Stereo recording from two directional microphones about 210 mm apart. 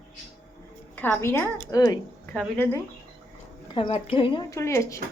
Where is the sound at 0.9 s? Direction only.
10° left (ahead or behind).